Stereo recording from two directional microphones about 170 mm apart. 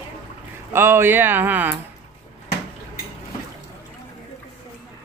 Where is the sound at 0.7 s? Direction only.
15° right (ahead or behind).